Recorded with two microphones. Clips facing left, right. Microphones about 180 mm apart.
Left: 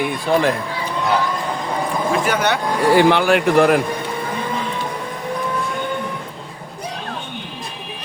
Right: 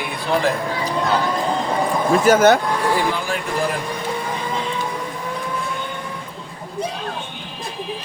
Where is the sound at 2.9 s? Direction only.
75° left (ahead or behind).